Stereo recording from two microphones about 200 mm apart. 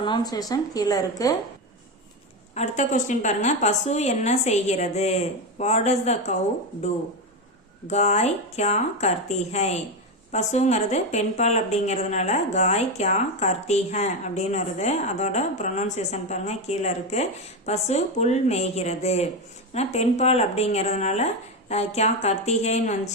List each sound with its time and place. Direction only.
0.0 s speech: 20° left (ahead or behind)
2.6 s a woman's voice: 35° left (ahead or behind)
7.9 s a woman's voice: 35° left (ahead or behind)